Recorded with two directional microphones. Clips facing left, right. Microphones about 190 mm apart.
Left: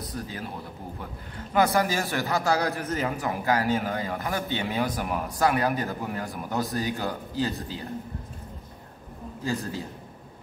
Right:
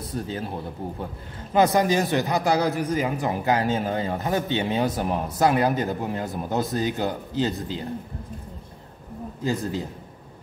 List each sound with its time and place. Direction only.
0.0 s speech: 30° right (ahead or behind)
1.5 s a man's voice: 20° right (ahead or behind)
9.4 s a man's voice: 20° right (ahead or behind)